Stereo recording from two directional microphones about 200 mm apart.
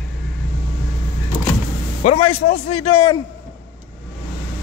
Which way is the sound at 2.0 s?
30° left (ahead or behind).